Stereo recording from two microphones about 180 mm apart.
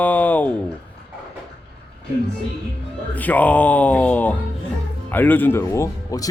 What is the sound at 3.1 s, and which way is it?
Speech, 10° left (ahead or behind).